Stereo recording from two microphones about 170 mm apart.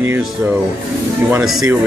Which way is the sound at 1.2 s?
5° right (ahead or behind).